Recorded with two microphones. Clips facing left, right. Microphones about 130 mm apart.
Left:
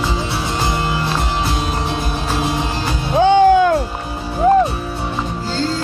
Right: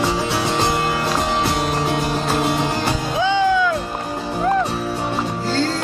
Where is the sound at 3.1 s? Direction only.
55° left (ahead or behind).